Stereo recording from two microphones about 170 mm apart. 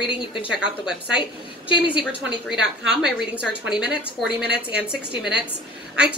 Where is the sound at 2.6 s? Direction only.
5° right (ahead or behind).